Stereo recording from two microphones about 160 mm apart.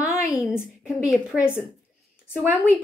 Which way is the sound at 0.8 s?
15° left (ahead or behind).